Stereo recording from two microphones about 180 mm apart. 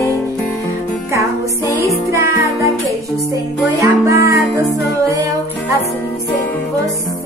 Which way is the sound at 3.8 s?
15° right (ahead or behind).